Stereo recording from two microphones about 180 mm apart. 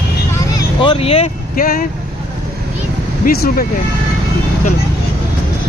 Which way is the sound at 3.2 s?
55° left (ahead or behind).